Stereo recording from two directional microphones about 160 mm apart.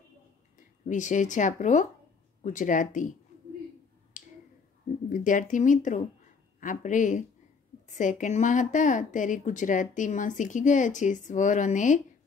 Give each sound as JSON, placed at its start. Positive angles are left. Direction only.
{"t": 0.8, "sound": "speech", "side_deg": 50}
{"t": 4.1, "sound": "finger snapping", "side_deg": 55}
{"t": 5.1, "sound": "speech", "side_deg": 55}